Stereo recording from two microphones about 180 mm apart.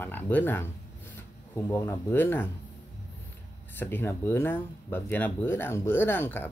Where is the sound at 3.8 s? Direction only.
10° left (ahead or behind).